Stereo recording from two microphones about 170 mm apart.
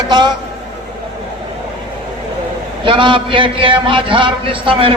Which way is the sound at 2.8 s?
30° right (ahead or behind).